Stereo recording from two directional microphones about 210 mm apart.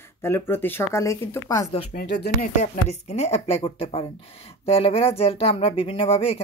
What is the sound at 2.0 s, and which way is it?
Speech, 50° left (ahead or behind).